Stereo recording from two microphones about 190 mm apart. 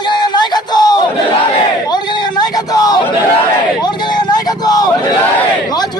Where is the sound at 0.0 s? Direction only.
25° left (ahead or behind).